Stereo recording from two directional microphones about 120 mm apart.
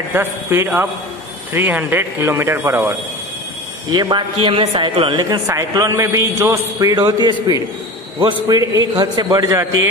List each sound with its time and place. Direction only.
0.1 s a man's voice: 20° right (ahead or behind)
3.9 s a man's voice: 35° right (ahead or behind)
5.5 s a man's voice: 25° right (ahead or behind)